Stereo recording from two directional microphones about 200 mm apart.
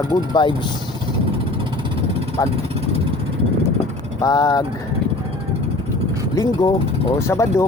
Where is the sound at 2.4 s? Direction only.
15° left (ahead or behind).